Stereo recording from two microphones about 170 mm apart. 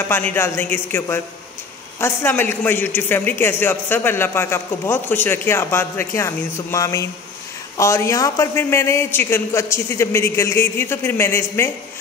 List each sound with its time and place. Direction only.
0.1 s a man's voice: 15° left (ahead or behind)